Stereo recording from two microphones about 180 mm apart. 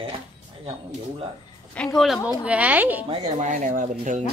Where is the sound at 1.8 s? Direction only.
5° left (ahead or behind).